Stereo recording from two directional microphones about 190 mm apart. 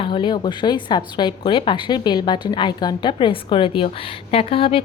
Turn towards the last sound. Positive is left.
turn(degrees=30)  # may be behind; listen again after turning